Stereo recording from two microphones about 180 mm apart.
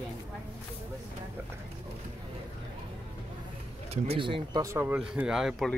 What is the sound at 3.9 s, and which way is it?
Speech, 30° right (ahead or behind).